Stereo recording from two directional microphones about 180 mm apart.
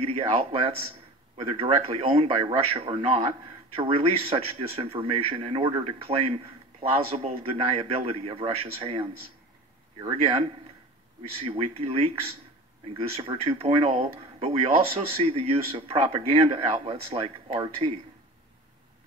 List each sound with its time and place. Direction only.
0.0 s speech: 30° right (ahead or behind)
10.1 s speech: 30° right (ahead or behind)